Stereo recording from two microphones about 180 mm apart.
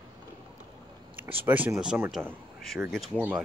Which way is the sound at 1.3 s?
10° right (ahead or behind).